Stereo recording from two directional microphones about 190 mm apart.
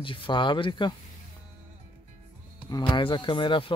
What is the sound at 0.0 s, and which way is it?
Speech, 25° left (ahead or behind).